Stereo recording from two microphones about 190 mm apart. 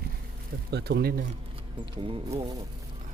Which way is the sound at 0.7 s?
60° right (ahead or behind).